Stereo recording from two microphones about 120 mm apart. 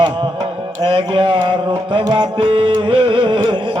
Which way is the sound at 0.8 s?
45° right (ahead or behind).